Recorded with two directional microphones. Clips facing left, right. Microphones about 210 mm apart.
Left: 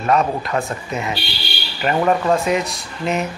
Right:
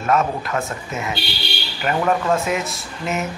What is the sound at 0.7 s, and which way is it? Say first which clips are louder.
Speech: left 2 dB; centre (ahead or behind).